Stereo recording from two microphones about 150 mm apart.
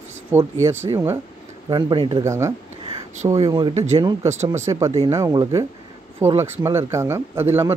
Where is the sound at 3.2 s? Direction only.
40° right (ahead or behind).